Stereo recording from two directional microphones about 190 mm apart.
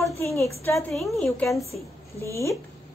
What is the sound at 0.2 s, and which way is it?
Speech, 15° left (ahead or behind).